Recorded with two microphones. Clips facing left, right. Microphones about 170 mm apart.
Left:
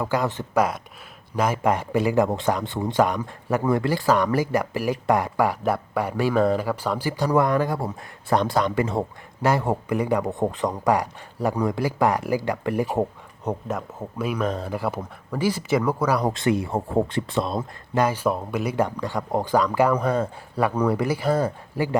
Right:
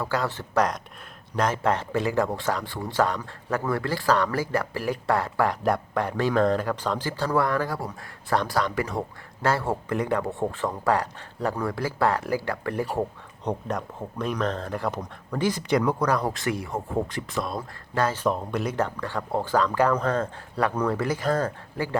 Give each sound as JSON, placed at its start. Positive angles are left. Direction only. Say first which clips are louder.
{"t": 0.0, "sound": "speech", "louder": "left 3 dB", "side_deg": 15}
{"t": 9.4, "sound": "speech", "louder": "left 3 dB", "side_deg": 15}
{"t": 13.4, "sound": "speech", "louder": "left 1 dB", "side_deg": 5}
{"t": 16.3, "sound": "speech", "louder": "left 6 dB", "side_deg": 25}